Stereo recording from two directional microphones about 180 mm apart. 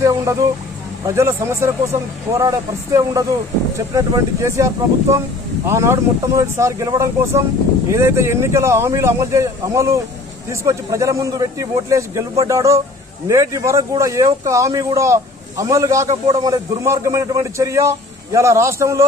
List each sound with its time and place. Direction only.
0.0 s speech: 20° right (ahead or behind)